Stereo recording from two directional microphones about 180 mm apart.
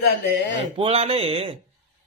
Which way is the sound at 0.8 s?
35° right (ahead or behind).